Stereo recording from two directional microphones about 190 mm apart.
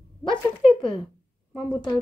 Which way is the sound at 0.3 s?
5° left (ahead or behind).